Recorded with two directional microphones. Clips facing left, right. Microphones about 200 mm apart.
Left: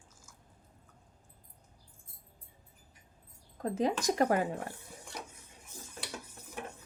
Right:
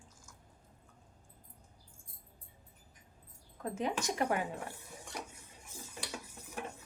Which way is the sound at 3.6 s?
35° left (ahead or behind).